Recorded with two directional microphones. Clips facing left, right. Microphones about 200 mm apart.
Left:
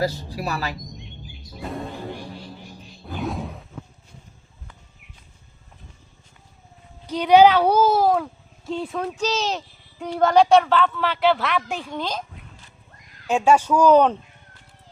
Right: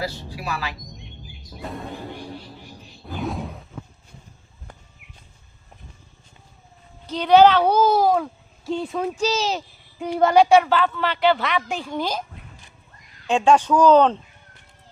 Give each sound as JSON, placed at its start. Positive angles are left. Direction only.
{"t": 0.0, "sound": "a woman's voice", "side_deg": 40}
{"t": 3.1, "sound": "whoosh", "side_deg": 0}
{"t": 7.1, "sound": "a child's voice", "side_deg": 10}
{"t": 13.2, "sound": "speech", "side_deg": 5}